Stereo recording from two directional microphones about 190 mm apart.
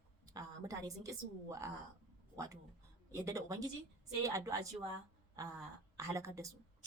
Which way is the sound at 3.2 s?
15° right (ahead or behind).